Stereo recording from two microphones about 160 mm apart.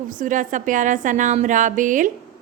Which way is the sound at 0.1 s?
55° right (ahead or behind).